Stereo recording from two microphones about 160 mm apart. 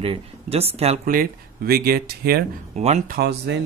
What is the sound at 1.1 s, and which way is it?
Speech, 65° right (ahead or behind).